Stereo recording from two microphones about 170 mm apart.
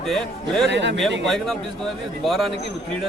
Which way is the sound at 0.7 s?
90° right.